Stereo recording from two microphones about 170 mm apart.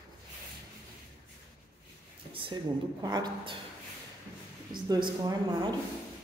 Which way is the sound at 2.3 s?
30° right (ahead or behind).